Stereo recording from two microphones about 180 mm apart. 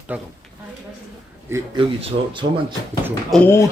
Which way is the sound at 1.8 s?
30° right (ahead or behind).